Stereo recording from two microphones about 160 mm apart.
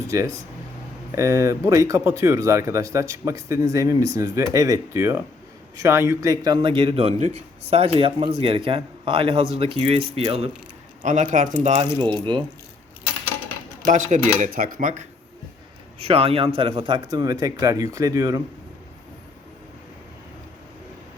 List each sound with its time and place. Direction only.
0.1 s speech: 20° right (ahead or behind)
6.4 s a man's voice: 30° right (ahead or behind)
7.2 s a man's voice: 45° right (ahead or behind)
11.0 s speech: 50° right (ahead or behind)
11.9 s speech: 30° right (ahead or behind)
13.8 s speech: 45° right (ahead or behind)
16.0 s speech: 35° right (ahead or behind); by 18.4 s 20° right (ahead or behind)